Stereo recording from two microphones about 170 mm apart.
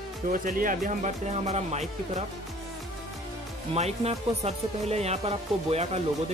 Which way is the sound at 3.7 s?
40° right (ahead or behind).